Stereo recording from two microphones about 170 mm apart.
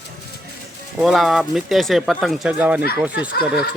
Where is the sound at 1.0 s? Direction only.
Centre (ahead or behind).